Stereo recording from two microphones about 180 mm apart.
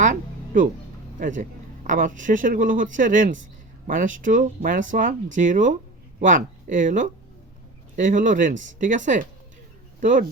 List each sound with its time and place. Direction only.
0.0 s music: 45° right (ahead or behind)
1.2 s speech: 45° right (ahead or behind)